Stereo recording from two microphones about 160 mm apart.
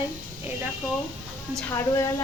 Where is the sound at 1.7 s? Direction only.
20° left (ahead or behind).